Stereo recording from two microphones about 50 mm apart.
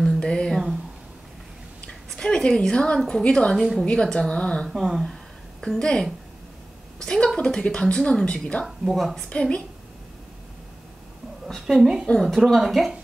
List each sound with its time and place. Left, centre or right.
0.2 s a sound: centre
2.0 s a sound: centre
3.1 s a woman's voice: centre
3.5 s speech: centre
3.8 s a woman's voice: centre
4.6 s a woman's voice: centre
8.6 s speech: centre
9.3 s a woman's voice: centre
11.6 s a woman's voice: centre